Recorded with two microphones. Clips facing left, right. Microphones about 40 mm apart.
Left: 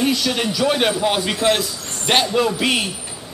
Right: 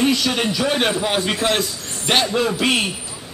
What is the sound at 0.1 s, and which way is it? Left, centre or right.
Speech, right.